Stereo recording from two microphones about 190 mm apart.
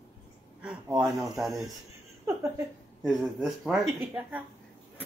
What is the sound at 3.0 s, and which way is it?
Speech, centre (ahead or behind).